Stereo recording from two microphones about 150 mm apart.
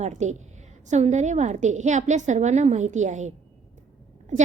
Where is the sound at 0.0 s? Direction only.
50° right (ahead or behind).